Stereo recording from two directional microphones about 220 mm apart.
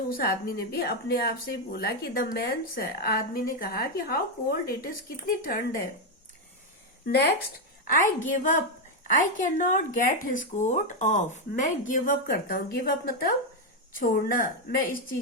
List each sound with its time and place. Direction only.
0.1 s speech: 45° left (ahead or behind)
7.0 s speech: 50° left (ahead or behind)
7.9 s speech: 35° left (ahead or behind)